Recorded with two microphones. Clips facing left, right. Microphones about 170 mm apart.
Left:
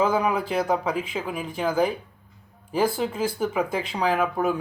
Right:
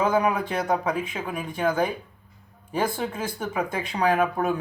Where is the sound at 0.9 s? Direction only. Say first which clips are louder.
Even; 30° left (ahead or behind).